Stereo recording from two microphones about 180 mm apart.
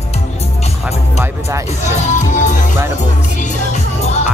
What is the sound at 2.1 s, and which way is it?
Music, 40° left (ahead or behind).